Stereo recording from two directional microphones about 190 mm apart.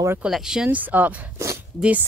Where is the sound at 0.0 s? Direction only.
10° right (ahead or behind).